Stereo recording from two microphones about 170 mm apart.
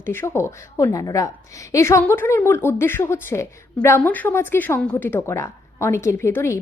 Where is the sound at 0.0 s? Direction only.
15° left (ahead or behind).